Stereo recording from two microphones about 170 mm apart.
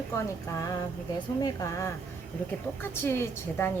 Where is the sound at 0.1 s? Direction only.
15° left (ahead or behind).